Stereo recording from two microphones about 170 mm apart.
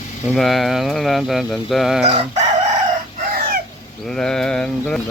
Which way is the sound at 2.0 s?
35° right (ahead or behind).